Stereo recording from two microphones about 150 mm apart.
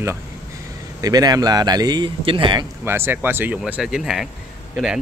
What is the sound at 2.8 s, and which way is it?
Speech, 15° right (ahead or behind).